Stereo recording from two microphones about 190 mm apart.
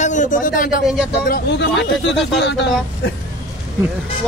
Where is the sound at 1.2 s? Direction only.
60° left (ahead or behind).